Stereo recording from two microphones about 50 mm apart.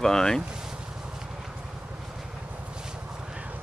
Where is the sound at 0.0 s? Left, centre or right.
Centre.